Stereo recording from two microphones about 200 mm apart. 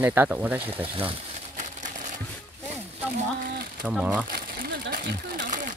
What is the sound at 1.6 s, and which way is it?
Crumpling, 40° right (ahead or behind).